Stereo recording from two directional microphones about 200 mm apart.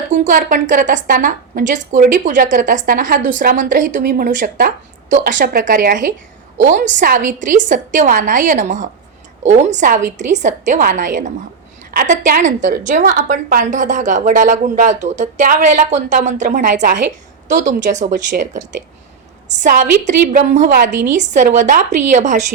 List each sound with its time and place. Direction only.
0.1 s a woman's voice: 40° right (ahead or behind)